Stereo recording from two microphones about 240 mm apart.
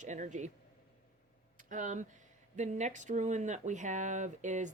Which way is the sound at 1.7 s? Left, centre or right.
Right.